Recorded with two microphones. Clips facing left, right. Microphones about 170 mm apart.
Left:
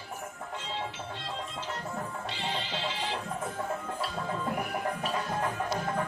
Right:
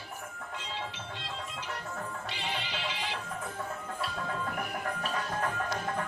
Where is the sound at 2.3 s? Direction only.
15° right (ahead or behind).